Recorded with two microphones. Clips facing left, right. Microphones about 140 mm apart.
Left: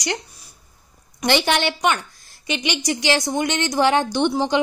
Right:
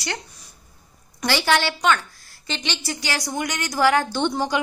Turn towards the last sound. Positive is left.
turn(degrees=15)  # may be behind; listen again after turning